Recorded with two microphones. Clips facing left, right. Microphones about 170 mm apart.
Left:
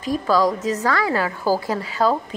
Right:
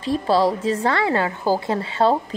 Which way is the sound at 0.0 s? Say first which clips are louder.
Right 1 dB; 30° right (ahead or behind).